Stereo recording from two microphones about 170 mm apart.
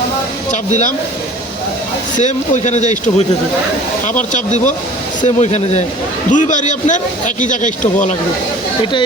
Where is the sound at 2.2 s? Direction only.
45° left (ahead or behind).